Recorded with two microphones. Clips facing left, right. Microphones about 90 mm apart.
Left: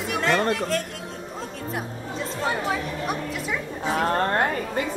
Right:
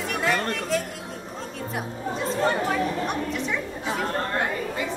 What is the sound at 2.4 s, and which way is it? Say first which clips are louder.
Chatter: right 2 dB; 5° left (ahead or behind).